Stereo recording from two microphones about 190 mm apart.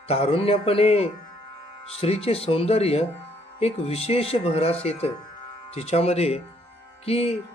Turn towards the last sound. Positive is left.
turn(degrees=30)  # may be behind; listen again after turning